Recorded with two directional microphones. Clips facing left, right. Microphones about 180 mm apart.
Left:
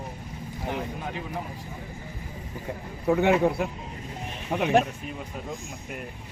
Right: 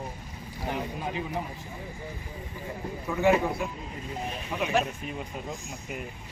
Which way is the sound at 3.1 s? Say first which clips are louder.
Left 3 dB; 65° left (ahead or behind).